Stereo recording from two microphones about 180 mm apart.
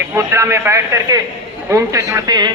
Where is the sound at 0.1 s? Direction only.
15° right (ahead or behind).